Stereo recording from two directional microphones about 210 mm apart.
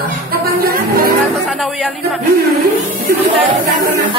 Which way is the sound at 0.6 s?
45° right (ahead or behind).